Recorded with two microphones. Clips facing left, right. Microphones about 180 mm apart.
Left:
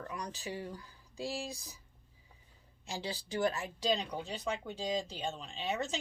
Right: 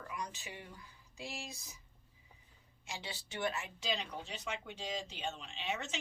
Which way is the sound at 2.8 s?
35° left (ahead or behind).